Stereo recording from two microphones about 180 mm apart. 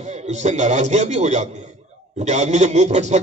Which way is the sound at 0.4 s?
40° right (ahead or behind).